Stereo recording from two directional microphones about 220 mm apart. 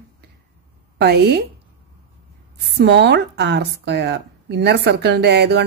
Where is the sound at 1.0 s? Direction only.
50° right (ahead or behind).